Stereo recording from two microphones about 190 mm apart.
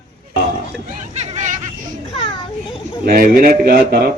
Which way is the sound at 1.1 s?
35° right (ahead or behind).